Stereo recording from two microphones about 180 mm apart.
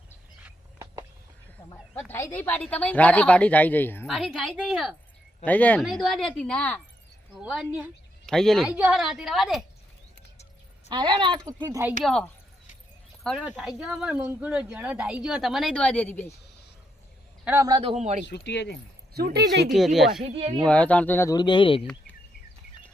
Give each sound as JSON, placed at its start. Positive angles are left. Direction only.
{"t": 0.4, "sound": "a sound", "side_deg": -15}
{"t": 2.0, "sound": "speech", "side_deg": 15}
{"t": 4.0, "sound": "speech", "side_deg": 0}
{"t": 5.8, "sound": "speech", "side_deg": 0}
{"t": 10.8, "sound": "speech", "side_deg": -25}
{"t": 13.4, "sound": "speech", "side_deg": 0}
{"t": 17.4, "sound": "a man's voice", "side_deg": -10}
{"t": 17.7, "sound": "a man's voice", "side_deg": -30}
{"t": 18.3, "sound": "speech", "side_deg": 75}
{"t": 19.1, "sound": "speech", "side_deg": -65}
{"t": 19.6, "sound": "speech", "side_deg": 0}
{"t": 20.2, "sound": "a man's voice", "side_deg": -30}
{"t": 20.7, "sound": "speech", "side_deg": 5}
{"t": 21.3, "sound": "speech", "side_deg": 25}